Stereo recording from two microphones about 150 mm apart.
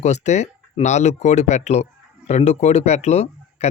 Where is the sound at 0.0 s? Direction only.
50° left (ahead or behind).